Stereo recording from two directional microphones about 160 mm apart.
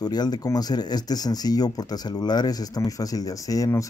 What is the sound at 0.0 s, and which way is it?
Speech, 25° left (ahead or behind).